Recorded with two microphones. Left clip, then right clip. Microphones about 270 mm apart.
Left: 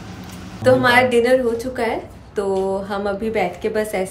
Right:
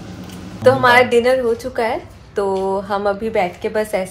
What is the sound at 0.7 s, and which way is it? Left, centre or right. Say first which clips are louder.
A woman's voice: right 2 dB; centre.